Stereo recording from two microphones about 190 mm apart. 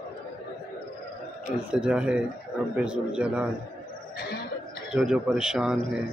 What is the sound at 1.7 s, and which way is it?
A man's voice, 5° right (ahead or behind).